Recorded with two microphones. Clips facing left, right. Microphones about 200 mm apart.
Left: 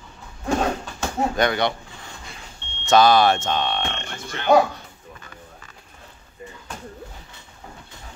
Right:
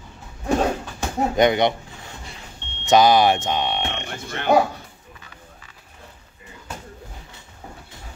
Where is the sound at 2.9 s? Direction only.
15° right (ahead or behind).